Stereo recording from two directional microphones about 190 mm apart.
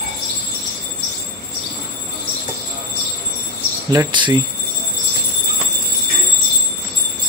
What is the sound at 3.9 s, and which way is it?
Speech, 25° right (ahead or behind).